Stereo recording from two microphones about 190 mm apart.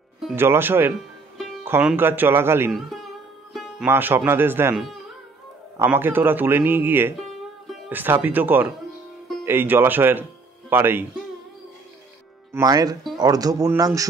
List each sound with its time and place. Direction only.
0.4 s speech: 10° right (ahead or behind)
2.7 s speech: centre (ahead or behind)
3.5 s music: centre (ahead or behind)
3.9 s speech: 10° right (ahead or behind)
7.2 s music: centre (ahead or behind)
7.9 s speech: 10° right (ahead or behind)
12.5 s speech: 20° right (ahead or behind)